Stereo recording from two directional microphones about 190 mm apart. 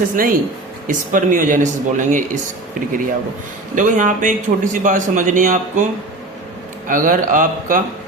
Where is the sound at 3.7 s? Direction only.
40° right (ahead or behind).